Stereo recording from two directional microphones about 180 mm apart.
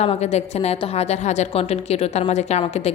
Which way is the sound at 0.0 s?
35° left (ahead or behind).